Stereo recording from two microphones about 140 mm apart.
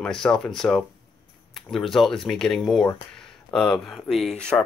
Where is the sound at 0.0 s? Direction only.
5° left (ahead or behind).